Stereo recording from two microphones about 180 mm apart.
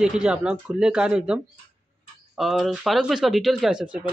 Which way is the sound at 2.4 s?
Centre (ahead or behind).